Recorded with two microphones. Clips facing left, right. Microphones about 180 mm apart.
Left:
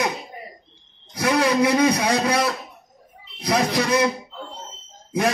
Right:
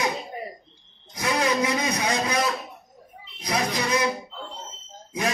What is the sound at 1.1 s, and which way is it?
A man's voice, 80° left.